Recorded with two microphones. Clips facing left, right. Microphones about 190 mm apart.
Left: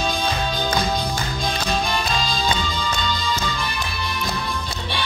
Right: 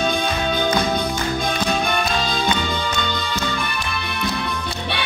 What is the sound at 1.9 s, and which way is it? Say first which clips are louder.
Music: right 2 dB; 60° right (ahead or behind).